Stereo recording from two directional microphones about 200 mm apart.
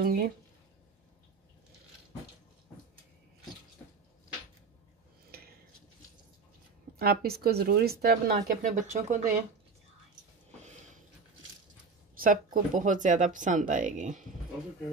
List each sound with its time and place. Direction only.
0.0 s speech: 50° right (ahead or behind)
5.3 s a sound: 50° right (ahead or behind)
7.0 s speech: 50° right (ahead or behind)
12.2 s speech: 40° right (ahead or behind)